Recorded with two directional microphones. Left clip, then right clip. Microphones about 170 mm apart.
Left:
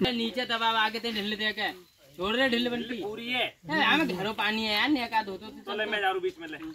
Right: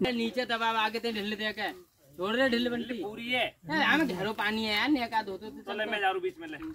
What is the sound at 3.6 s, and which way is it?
Speech, 25° left (ahead or behind).